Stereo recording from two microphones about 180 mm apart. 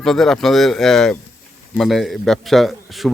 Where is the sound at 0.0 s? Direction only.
Centre (ahead or behind).